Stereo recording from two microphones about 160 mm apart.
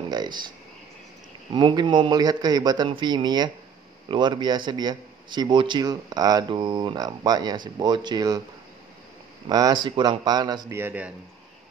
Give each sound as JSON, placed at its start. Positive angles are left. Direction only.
{"t": 0.1, "sound": "speech", "side_deg": -25}
{"t": 1.5, "sound": "a man's voice", "side_deg": -30}
{"t": 9.5, "sound": "a man's voice", "side_deg": -25}
{"t": 10.8, "sound": "speech", "side_deg": -10}